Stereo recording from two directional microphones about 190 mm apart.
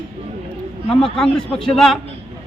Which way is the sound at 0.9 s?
5° left (ahead or behind).